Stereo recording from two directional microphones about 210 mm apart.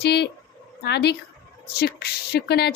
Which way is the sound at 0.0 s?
50° left (ahead or behind).